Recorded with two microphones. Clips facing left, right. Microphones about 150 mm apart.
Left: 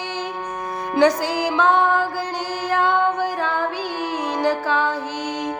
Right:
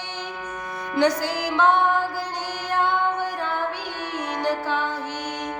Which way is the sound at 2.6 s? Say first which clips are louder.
Left 4 dB; 90° left.